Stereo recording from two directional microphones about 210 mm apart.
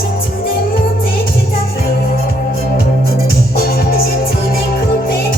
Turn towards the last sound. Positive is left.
turn(degrees=45)  # may be behind; listen again after turning